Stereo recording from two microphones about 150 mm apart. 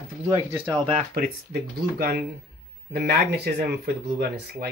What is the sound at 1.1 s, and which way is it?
Speech, 85° right.